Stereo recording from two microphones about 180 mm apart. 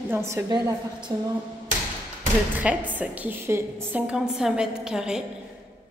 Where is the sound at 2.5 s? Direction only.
10° right (ahead or behind).